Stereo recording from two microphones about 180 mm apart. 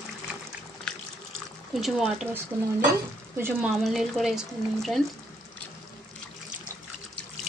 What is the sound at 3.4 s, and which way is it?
Speech, 10° right (ahead or behind).